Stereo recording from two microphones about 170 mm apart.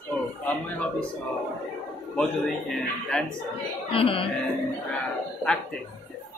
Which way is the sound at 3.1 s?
5° left (ahead or behind).